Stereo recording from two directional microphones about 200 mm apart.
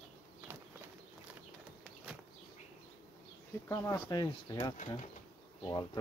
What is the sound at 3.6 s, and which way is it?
Speech, 15° left (ahead or behind).